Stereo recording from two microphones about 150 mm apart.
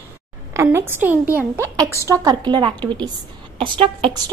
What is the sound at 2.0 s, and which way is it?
A woman's voice, 25° right (ahead or behind).